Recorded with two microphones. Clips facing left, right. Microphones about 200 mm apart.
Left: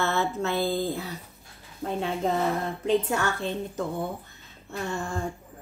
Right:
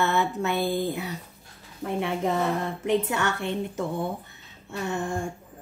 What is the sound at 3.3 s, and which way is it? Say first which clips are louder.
Speech: right 1 dB; 70° right (ahead or behind).